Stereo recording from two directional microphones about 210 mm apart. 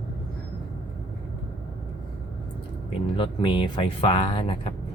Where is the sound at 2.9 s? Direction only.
25° left (ahead or behind).